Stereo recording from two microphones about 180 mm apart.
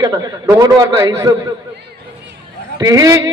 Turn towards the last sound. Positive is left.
turn(degrees=-20)  # may be behind; listen again after turning